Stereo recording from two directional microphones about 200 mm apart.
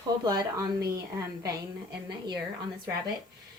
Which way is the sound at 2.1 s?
20° right (ahead or behind).